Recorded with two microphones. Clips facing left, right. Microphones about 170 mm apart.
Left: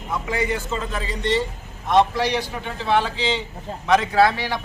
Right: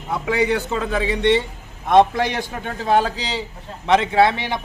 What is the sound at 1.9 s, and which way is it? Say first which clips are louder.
A man's voice: right 3 dB; 50° right (ahead or behind).